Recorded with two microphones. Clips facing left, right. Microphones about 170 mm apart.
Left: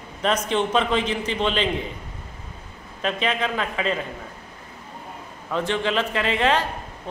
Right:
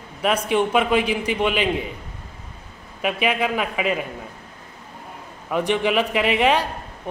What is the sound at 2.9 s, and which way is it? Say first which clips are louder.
A man's voice: right 2 dB; 10° right (ahead or behind).